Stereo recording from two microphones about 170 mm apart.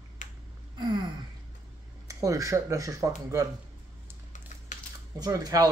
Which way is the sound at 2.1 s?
20° right (ahead or behind).